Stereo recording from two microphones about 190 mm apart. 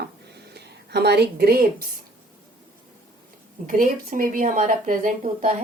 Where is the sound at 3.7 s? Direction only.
45° right (ahead or behind).